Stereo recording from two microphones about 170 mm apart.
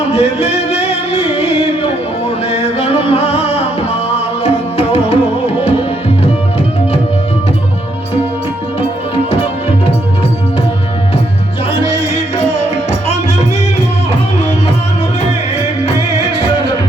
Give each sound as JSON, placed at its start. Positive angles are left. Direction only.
{"t": 0.0, "sound": "music", "side_deg": 40}
{"t": 9.3, "sound": "music", "side_deg": 35}